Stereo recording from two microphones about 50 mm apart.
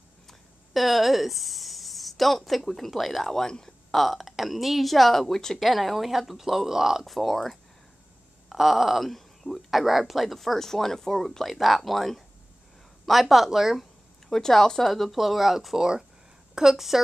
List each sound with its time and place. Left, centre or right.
0.3 s speech: centre
14.3 s a woman's voice: centre